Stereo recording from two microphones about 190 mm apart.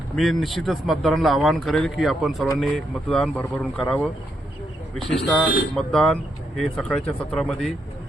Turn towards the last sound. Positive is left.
turn(degrees=0)  # may be behind; listen again after turning